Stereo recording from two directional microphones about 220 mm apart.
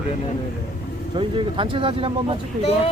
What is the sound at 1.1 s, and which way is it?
Speech, 20° right (ahead or behind).